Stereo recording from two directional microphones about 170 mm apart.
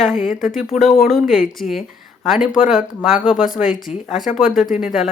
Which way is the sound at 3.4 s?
50° left (ahead or behind).